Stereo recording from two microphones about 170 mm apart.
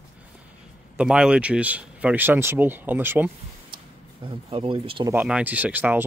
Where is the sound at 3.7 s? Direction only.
30° right (ahead or behind).